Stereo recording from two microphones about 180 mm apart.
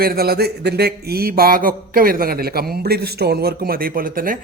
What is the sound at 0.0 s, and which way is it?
A man's voice, 55° right (ahead or behind).